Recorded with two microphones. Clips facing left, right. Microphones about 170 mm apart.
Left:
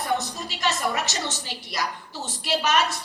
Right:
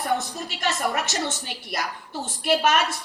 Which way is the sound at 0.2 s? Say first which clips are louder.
Even; 55° right (ahead or behind).